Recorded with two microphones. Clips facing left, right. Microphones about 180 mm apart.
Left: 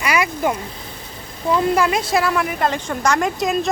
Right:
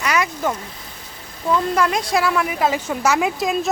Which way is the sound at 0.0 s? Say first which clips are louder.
Left 1 dB; 10° left (ahead or behind).